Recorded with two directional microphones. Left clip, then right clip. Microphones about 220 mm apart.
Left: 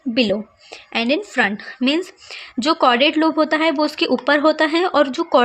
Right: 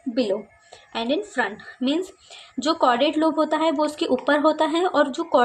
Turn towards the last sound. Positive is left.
turn(degrees=25)  # may be behind; listen again after turning